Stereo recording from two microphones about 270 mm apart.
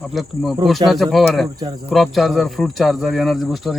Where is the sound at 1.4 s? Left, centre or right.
Centre.